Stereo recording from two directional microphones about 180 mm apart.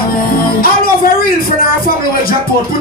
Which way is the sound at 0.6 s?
55° left (ahead or behind).